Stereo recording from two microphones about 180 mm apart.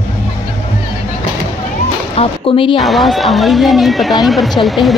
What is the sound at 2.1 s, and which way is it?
Speech, 30° left (ahead or behind).